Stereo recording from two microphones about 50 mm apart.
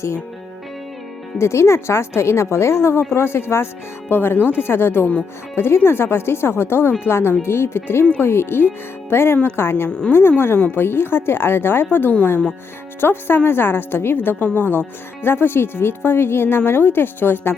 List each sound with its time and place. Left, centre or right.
1.4 s a woman's voice: left